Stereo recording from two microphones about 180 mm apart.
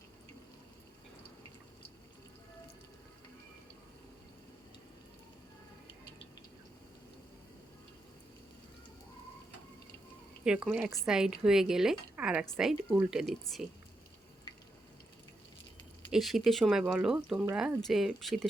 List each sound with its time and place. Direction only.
10.4 s speech: 5° right (ahead or behind)
16.1 s speech: centre (ahead or behind)